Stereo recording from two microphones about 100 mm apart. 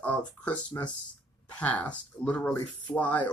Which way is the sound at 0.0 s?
15° left (ahead or behind).